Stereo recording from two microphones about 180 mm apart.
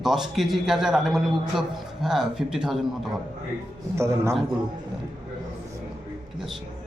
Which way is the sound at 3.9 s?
15° right (ahead or behind).